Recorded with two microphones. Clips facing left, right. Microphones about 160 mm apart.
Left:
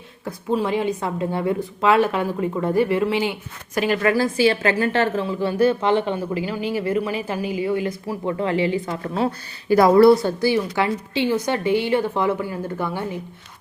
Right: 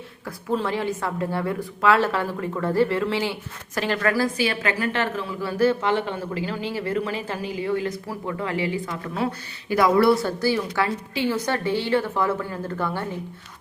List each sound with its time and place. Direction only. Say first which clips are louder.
0.3 s a woman's voice: left 3 dB; 15° left (ahead or behind)
4.4 s a woman's voice: left 6 dB; 30° left (ahead or behind)
10.2 s a woman's voice: left 3 dB; 20° left (ahead or behind)